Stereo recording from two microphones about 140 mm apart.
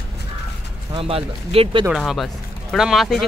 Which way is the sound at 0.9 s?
45° right (ahead or behind).